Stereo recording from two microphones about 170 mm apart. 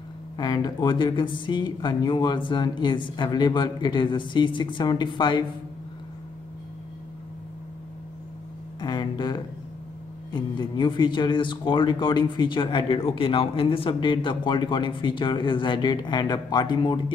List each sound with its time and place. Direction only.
0.4 s speech: 25° left (ahead or behind)
8.8 s a sound: 25° left (ahead or behind)
10.3 s speech: 25° left (ahead or behind)